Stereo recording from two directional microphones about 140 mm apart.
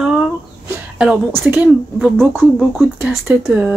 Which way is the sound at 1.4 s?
15° right (ahead or behind).